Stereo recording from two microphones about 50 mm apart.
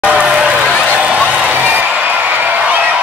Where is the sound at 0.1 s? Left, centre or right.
Right.